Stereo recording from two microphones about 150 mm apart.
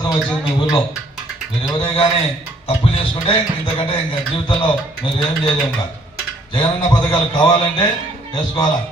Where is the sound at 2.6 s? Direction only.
40° left (ahead or behind).